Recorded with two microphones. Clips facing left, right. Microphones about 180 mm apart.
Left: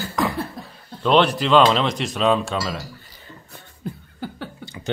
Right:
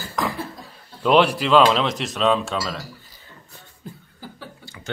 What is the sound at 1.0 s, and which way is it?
Speech, 5° right (ahead or behind).